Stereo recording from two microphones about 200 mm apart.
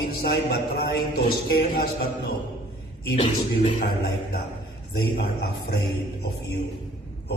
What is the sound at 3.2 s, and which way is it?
Speech, 30° left (ahead or behind).